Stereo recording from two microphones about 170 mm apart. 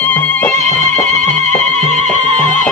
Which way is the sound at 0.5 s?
45° right (ahead or behind).